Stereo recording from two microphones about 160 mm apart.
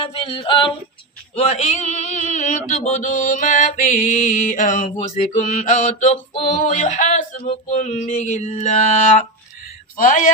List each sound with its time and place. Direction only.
0.0 s a sound: 35° left (ahead or behind)
1.4 s mantra: 45° left (ahead or behind)
10.0 s mantra: 55° left (ahead or behind)